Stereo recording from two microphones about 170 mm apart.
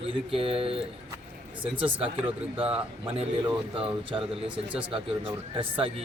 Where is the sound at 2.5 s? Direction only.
5° right (ahead or behind).